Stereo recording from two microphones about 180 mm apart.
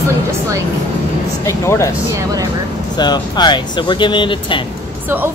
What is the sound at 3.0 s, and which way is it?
Speech, 25° left (ahead or behind).